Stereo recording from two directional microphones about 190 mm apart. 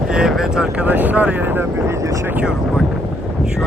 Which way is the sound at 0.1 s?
5° right (ahead or behind).